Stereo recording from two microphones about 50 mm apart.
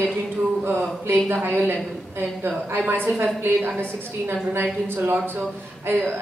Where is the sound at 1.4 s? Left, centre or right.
Right.